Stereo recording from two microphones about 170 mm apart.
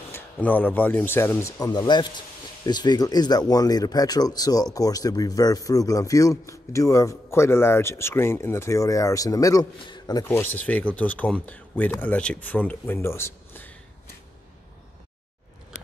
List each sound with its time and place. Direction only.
0.1 s a man's voice: 10° left (ahead or behind)
10.2 s speech: 10° left (ahead or behind)